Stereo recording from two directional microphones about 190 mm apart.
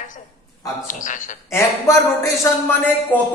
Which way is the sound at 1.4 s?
15° left (ahead or behind).